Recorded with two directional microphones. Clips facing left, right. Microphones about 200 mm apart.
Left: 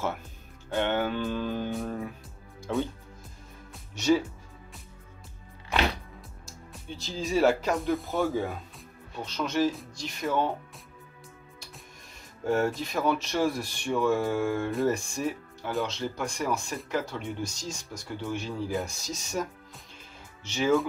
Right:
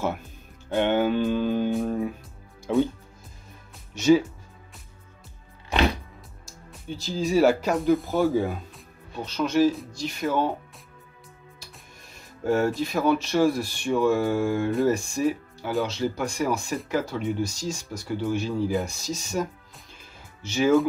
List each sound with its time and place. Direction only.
0.7 s music: 20° right (ahead or behind)
2.7 s music: 10° right (ahead or behind)
6.7 s speech: 5° right (ahead or behind)
12.4 s speech: centre (ahead or behind)
20.4 s music: 5° right (ahead or behind)